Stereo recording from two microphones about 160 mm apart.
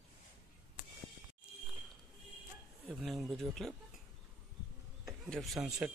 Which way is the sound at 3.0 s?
Centre (ahead or behind).